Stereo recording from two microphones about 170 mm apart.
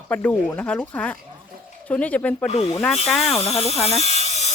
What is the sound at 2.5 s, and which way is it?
Speech, 35° left (ahead or behind).